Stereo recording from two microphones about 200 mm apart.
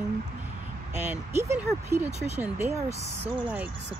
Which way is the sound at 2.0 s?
35° right (ahead or behind).